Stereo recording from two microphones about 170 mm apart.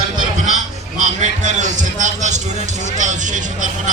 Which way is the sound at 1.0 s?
45° right (ahead or behind).